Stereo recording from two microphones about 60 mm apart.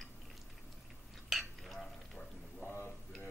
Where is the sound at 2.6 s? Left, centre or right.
Left.